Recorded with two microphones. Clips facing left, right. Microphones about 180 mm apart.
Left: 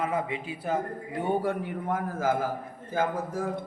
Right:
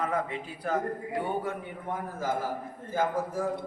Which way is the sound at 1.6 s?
90° left.